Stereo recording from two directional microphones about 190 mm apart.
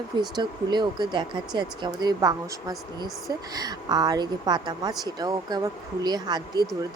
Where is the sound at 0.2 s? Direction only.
20° right (ahead or behind).